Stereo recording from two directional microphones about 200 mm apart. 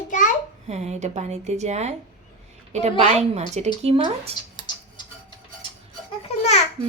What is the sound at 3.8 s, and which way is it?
Speech, 30° right (ahead or behind).